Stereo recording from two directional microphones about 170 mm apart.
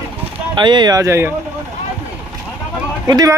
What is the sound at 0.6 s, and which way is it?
Speech, 25° right (ahead or behind).